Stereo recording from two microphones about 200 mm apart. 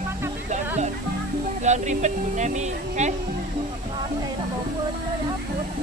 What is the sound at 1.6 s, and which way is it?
Speech, 35° right (ahead or behind).